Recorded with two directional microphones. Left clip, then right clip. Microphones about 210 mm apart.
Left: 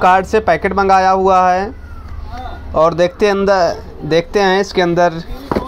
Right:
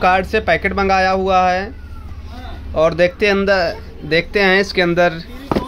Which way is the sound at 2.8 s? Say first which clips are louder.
Left 2 dB; 15° left (ahead or behind).